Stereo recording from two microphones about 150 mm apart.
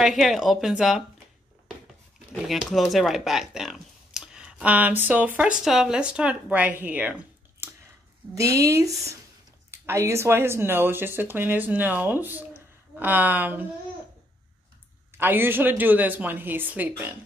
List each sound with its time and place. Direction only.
0.0 s speech: centre (ahead or behind)
2.4 s speech: centre (ahead or behind)
7.6 s a sound: 15° right (ahead or behind)
8.4 s speech: 20° right (ahead or behind)
15.1 s speech: 15° right (ahead or behind)